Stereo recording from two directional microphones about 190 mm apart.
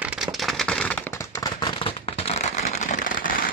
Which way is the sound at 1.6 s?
25° left (ahead or behind).